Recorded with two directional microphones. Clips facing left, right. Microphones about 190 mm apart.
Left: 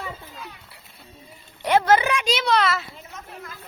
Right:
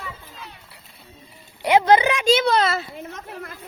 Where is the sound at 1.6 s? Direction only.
15° right (ahead or behind).